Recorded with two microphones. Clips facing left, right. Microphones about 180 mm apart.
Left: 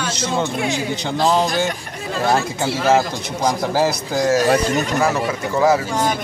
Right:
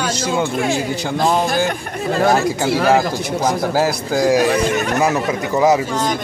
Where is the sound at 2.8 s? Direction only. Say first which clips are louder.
Left 1 dB; centre (ahead or behind).